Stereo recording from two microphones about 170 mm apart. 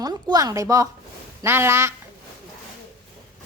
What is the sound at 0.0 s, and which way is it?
A woman's voice, 25° right (ahead or behind).